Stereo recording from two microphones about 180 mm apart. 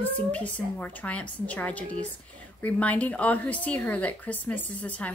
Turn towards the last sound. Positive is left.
turn(degrees=10)  # may be behind; listen again after turning